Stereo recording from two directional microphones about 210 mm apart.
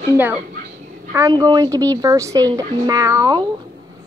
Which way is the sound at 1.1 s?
15° right (ahead or behind).